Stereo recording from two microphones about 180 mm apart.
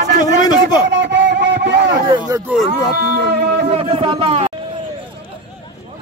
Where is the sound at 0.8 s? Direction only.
80° right.